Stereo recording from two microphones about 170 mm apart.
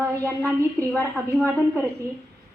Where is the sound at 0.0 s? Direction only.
15° right (ahead or behind).